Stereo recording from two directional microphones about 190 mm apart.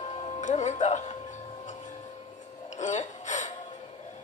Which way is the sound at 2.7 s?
40° left (ahead or behind).